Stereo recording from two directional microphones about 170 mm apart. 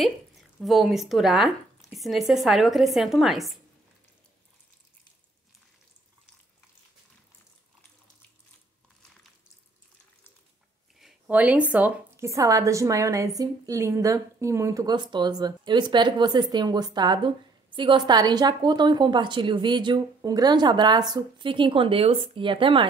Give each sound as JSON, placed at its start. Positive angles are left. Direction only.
{"t": 0.0, "sound": "speech", "side_deg": 0}
{"t": 11.0, "sound": "a woman's voice", "side_deg": -5}